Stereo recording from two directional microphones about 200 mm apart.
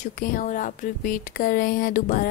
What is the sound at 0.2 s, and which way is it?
Speech, 40° left (ahead or behind).